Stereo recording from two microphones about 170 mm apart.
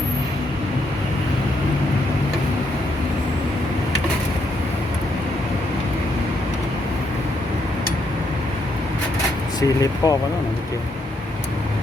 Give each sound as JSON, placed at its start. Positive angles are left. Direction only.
{"t": 9.6, "sound": "speech", "side_deg": 20}